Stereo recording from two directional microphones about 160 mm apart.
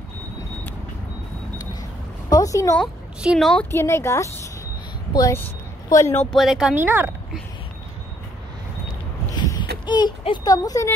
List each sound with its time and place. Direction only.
1.8 s a sound: 25° left (ahead or behind)
2.8 s a woman's voice: centre (ahead or behind)
3.7 s a woman's voice: 15° left (ahead or behind)
6.3 s speech: centre (ahead or behind)
6.8 s speech: 15° right (ahead or behind)
9.3 s a sound: 25° left (ahead or behind)
9.8 s speech: 30° left (ahead or behind)